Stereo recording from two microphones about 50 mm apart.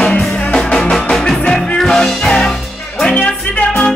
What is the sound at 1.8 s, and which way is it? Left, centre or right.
Music, centre.